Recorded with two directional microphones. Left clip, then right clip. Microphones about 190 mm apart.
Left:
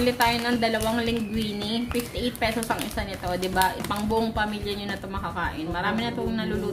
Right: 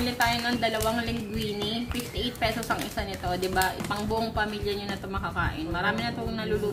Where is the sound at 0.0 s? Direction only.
15° left (ahead or behind).